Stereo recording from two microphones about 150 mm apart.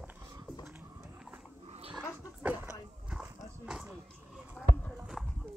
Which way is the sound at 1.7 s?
40° right (ahead or behind).